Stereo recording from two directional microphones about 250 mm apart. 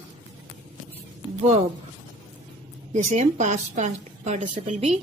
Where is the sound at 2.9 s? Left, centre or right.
Right.